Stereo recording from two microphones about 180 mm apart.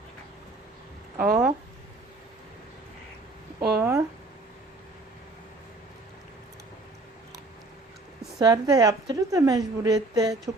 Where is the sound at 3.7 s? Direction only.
10° right (ahead or behind).